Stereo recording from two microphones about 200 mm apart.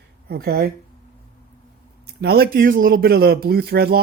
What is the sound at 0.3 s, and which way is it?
Speech, 50° right (ahead or behind).